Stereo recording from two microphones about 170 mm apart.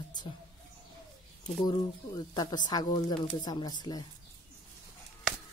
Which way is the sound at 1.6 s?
25° left (ahead or behind).